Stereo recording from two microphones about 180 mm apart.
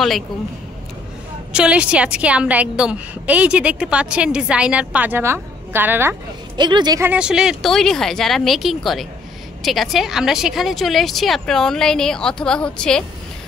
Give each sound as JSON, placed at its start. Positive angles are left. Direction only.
{"t": 1.5, "sound": "a woman's voice", "side_deg": -5}
{"t": 6.5, "sound": "speech", "side_deg": -25}
{"t": 7.1, "sound": "speech", "side_deg": -5}